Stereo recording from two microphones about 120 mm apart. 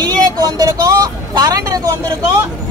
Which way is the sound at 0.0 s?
35° right (ahead or behind).